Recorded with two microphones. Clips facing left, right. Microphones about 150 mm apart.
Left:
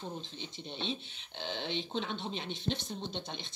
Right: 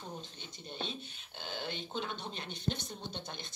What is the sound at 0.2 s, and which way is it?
Speech, 45° right (ahead or behind).